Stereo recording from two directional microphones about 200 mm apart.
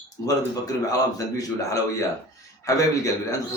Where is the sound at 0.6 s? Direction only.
15° left (ahead or behind).